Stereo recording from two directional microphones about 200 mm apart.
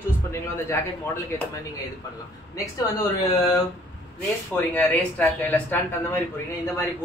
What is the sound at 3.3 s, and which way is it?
Speech, 15° left (ahead or behind).